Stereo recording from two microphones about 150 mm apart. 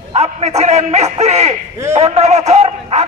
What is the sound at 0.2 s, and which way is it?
A man's voice, 50° right (ahead or behind).